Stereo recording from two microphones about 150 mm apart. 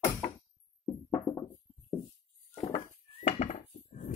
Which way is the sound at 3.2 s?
60° left (ahead or behind).